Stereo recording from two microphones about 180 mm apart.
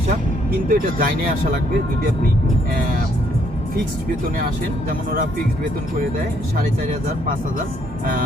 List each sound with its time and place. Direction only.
0.7 s speech: 50° right (ahead or behind)
4.4 s speech: 50° right (ahead or behind)